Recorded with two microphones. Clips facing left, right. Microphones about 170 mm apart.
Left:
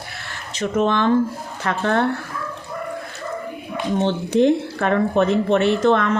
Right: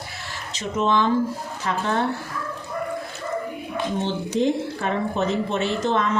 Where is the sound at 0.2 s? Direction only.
60° left (ahead or behind).